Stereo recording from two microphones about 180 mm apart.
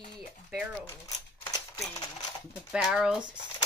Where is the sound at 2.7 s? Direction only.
5° right (ahead or behind).